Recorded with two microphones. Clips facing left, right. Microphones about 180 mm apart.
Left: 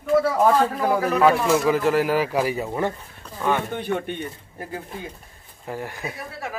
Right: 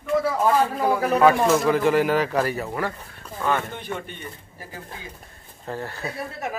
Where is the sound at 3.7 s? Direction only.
60° left (ahead or behind).